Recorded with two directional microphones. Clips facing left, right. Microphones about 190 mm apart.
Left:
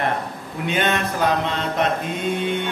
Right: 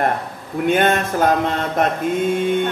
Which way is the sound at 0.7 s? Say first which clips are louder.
Right 5 dB; 50° right (ahead or behind).